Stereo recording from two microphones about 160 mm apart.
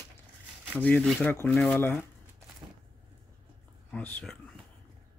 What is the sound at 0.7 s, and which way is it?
Speech, 10° left (ahead or behind).